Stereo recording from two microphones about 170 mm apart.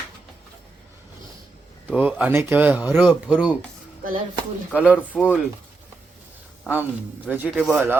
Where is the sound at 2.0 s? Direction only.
10° right (ahead or behind).